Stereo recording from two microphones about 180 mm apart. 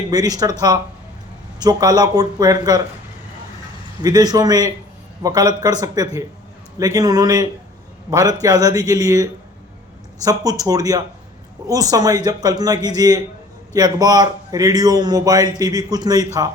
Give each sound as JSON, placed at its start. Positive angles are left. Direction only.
{"t": 0.1, "sound": "a man's voice", "side_deg": -20}
{"t": 1.5, "sound": "a man's voice", "side_deg": -20}
{"t": 4.0, "sound": "a man's voice", "side_deg": -20}